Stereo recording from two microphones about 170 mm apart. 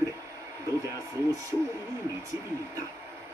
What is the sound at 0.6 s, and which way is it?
Speech, 20° right (ahead or behind).